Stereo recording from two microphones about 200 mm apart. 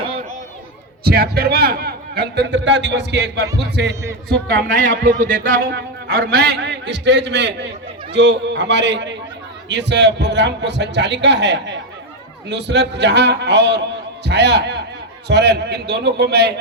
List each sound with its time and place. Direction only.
1.0 s a man's voice: 50° right (ahead or behind)
4.5 s a man's voice: 65° right (ahead or behind)